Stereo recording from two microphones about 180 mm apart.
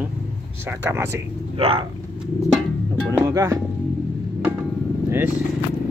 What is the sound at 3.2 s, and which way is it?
Speech, 20° right (ahead or behind).